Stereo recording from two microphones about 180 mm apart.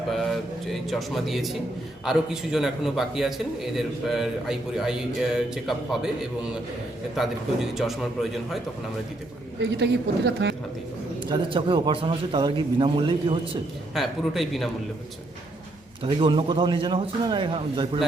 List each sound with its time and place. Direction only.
0.1 s a man's voice: centre (ahead or behind)
9.6 s a woman's voice: 75° right (ahead or behind)
11.2 s a man's voice: 30° right (ahead or behind)
13.9 s a man's voice: centre (ahead or behind)
16.0 s a man's voice: 30° right (ahead or behind)